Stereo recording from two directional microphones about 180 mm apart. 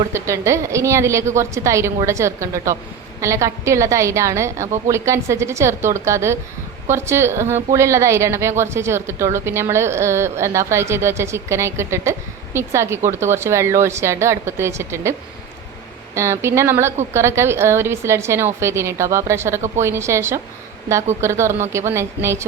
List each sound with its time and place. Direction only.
0.1 s a woman's voice: 15° right (ahead or behind)
16.1 s a woman's voice: 15° right (ahead or behind)